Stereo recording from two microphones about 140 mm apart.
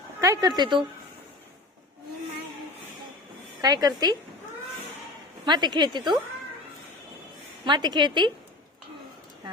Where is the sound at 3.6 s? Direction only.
30° right (ahead or behind).